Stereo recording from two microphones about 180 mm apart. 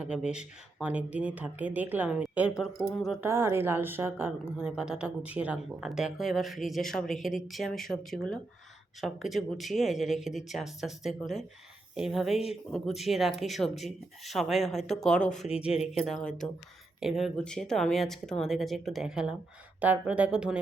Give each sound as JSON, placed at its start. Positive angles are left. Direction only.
{"t": 0.0, "sound": "a woman's voice", "side_deg": -5}
{"t": 3.2, "sound": "a woman's voice", "side_deg": -15}